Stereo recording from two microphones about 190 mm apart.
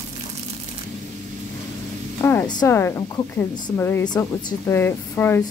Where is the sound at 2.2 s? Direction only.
10° left (ahead or behind).